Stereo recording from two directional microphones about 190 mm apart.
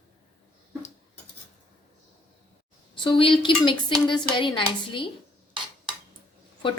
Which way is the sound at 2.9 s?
25° left (ahead or behind).